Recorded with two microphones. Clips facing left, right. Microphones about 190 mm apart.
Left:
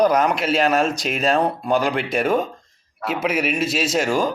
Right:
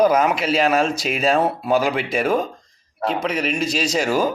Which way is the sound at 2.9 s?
30° right (ahead or behind).